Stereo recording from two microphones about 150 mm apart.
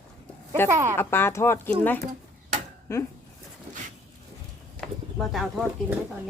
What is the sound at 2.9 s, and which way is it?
Speech, 20° left (ahead or behind).